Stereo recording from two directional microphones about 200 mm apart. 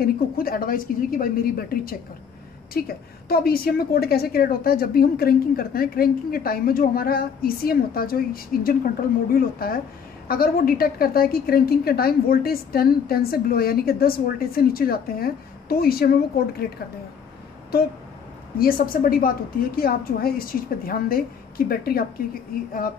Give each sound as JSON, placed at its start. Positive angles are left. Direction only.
{"t": 0.0, "sound": "a woman's voice", "side_deg": 45}
{"t": 18.6, "sound": "a woman's voice", "side_deg": 45}